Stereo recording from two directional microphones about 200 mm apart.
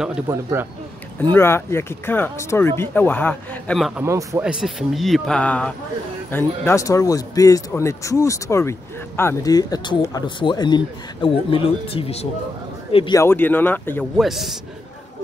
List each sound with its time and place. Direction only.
0.3 s speech: 15° right (ahead or behind)
1.3 s speech: 10° left (ahead or behind)
4.0 s speech: 15° right (ahead or behind)
4.5 s speech: 5° right (ahead or behind); by 13.2 s 25° left (ahead or behind)
13.2 s speech: 10° left (ahead or behind)
14.1 s speech: centre (ahead or behind)